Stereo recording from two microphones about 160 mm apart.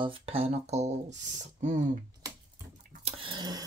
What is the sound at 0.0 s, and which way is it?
Speech, 35° right (ahead or behind).